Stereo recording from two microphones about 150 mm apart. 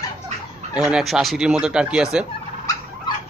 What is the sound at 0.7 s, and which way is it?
Speech, 5° right (ahead or behind).